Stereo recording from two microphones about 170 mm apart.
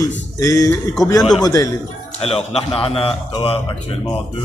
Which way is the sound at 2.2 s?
35° left (ahead or behind).